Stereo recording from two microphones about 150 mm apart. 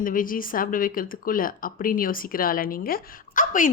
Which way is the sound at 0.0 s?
65° left (ahead or behind).